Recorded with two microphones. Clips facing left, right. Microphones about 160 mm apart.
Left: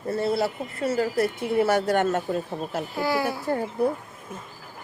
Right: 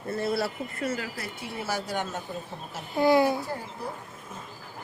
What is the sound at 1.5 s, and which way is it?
Speech, 60° left (ahead or behind).